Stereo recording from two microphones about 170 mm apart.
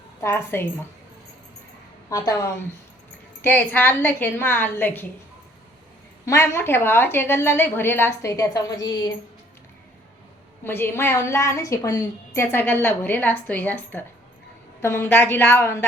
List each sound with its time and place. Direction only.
0.2 s a woman's voice: 15° left (ahead or behind)
2.0 s a woman's voice: 20° left (ahead or behind)
6.2 s a woman's voice: 15° left (ahead or behind)
10.6 s a woman's voice: 15° left (ahead or behind)